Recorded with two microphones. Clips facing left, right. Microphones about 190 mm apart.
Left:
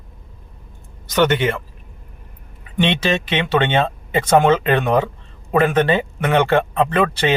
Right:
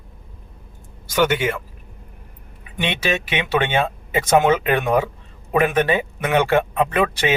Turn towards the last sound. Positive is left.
turn(degrees=-10)  # may be behind; listen again after turning